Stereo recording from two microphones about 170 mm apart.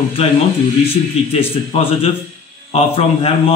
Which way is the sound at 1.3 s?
35° left (ahead or behind).